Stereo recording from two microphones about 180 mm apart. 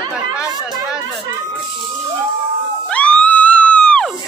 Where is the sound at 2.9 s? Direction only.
5° left (ahead or behind).